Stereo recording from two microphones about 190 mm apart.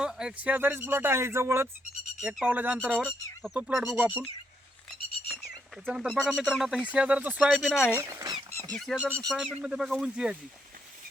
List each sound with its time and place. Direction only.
0.0 s speech: 5° right (ahead or behind)
5.3 s speech: centre (ahead or behind)
8.0 s speech: 20° right (ahead or behind)
8.7 s speech: centre (ahead or behind)